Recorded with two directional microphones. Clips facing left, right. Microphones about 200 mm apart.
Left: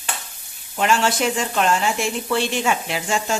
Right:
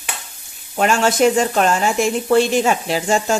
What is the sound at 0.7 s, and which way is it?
Speech, 45° right (ahead or behind).